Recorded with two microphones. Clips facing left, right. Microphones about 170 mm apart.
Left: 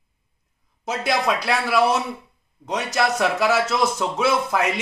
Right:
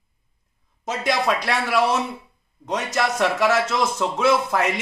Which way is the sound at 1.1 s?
5° left (ahead or behind).